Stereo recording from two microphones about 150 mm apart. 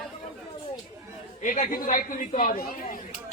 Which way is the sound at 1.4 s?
60° left (ahead or behind).